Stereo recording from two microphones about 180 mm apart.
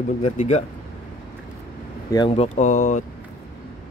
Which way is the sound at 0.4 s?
40° left (ahead or behind).